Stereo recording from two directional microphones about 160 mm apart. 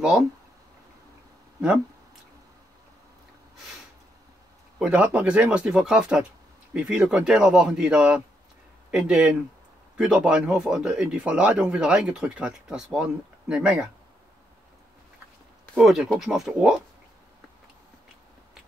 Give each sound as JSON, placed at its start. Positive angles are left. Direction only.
{"t": 4.7, "sound": "speech", "side_deg": -5}
{"t": 15.6, "sound": "speech", "side_deg": 0}